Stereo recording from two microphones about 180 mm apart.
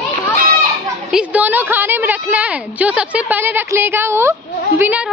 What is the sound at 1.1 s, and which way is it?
A woman's voice, 5° right (ahead or behind).